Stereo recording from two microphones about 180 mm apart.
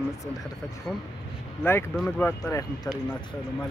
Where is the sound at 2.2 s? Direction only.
15° left (ahead or behind).